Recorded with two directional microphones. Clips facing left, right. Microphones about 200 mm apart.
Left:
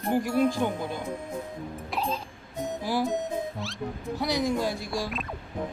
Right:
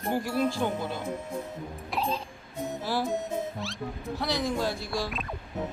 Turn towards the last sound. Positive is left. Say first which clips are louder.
# left 1 dB
turn(degrees=15)  # may be behind; listen again after turning